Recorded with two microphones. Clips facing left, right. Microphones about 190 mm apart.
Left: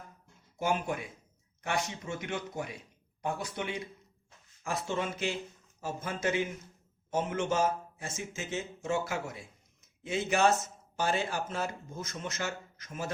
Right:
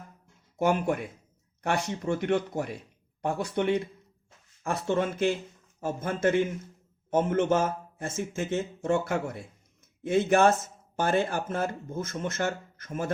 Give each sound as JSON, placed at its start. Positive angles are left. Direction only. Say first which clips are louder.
{"t": 0.6, "sound": "a man's voice", "louder": "right 6 dB", "side_deg": -60}